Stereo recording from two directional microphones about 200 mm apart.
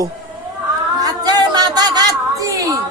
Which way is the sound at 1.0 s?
20° right (ahead or behind).